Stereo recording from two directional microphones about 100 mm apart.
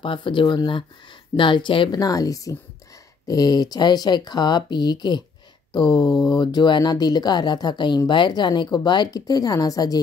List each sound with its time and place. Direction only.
0.0 s speech: 55° left (ahead or behind)
2.0 s speech: 40° left (ahead or behind)